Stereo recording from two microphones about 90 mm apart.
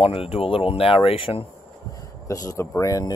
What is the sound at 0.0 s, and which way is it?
Speech, 90° left.